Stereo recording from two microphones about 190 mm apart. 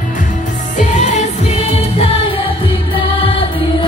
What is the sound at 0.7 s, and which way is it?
Music, 40° left (ahead or behind).